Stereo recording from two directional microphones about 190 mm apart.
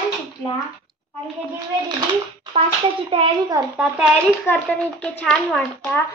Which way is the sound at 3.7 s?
10° right (ahead or behind).